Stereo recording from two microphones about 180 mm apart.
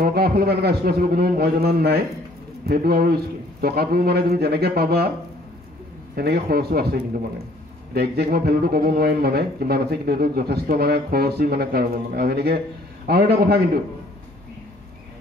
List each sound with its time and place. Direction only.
0.0 s speech: 60° right (ahead or behind)
6.1 s speech: 60° right (ahead or behind)